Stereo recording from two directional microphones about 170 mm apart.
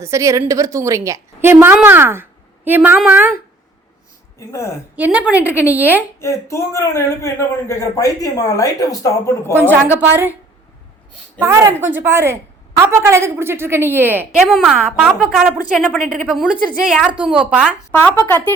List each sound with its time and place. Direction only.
0.0 s a woman's voice: 15° right (ahead or behind)
4.4 s speech: 15° left (ahead or behind)
4.9 s a woman's voice: 10° right (ahead or behind)
6.1 s speech: 15° left (ahead or behind)
9.9 s a woman's voice: 10° right (ahead or behind)
11.4 s a woman's voice: 15° right (ahead or behind)
14.3 s a woman's voice: centre (ahead or behind)
17.9 s speech: 10° left (ahead or behind)